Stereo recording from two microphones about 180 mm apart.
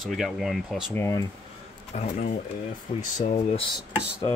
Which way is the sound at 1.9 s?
40° left (ahead or behind).